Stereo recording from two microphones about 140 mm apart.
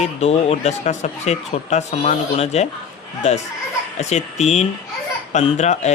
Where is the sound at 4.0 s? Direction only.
55° left (ahead or behind).